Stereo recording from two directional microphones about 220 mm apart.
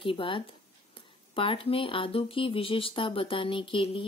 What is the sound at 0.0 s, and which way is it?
Speech, 25° left (ahead or behind).